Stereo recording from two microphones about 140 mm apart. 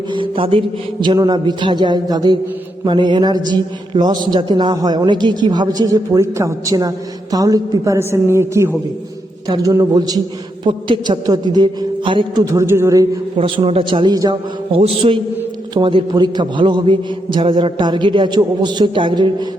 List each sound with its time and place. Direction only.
0.1 s a man's voice: 40° right (ahead or behind)
12.5 s a man's voice: 20° right (ahead or behind)
13.3 s a man's voice: 40° right (ahead or behind)
14.7 s a man's voice: 45° right (ahead or behind)